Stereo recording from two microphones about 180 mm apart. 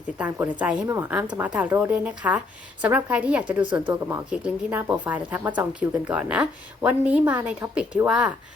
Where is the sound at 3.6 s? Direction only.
25° right (ahead or behind).